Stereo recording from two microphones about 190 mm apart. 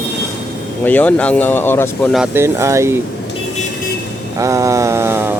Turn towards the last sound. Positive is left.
turn(degrees=-10)  # may be behind; listen again after turning